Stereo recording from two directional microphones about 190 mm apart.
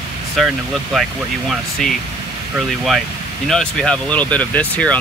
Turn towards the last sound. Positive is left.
turn(degrees=5)  # may be behind; listen again after turning